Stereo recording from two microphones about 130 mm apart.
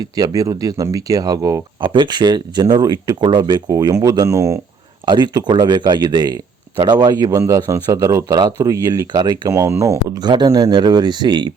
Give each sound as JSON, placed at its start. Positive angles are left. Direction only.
{"t": 0.0, "sound": "speech", "side_deg": -30}
{"t": 5.0, "sound": "speech", "side_deg": -35}